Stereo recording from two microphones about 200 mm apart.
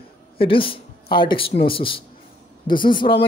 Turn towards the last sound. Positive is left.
turn(degrees=25)  # may be behind; listen again after turning